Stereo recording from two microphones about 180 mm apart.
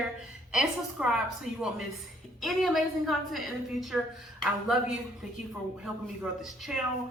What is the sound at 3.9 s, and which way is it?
Speech, 10° right (ahead or behind).